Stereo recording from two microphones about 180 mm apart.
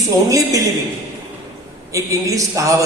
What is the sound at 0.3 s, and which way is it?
Speech, 20° right (ahead or behind).